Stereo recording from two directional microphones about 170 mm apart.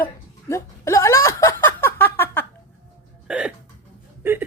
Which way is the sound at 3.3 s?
5° right (ahead or behind).